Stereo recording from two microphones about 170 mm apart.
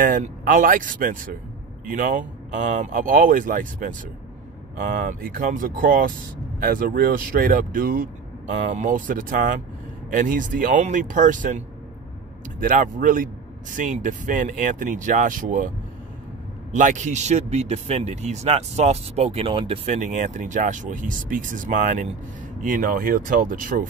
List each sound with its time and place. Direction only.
0.0 s speech: 50° right (ahead or behind)
16.7 s speech: 45° right (ahead or behind)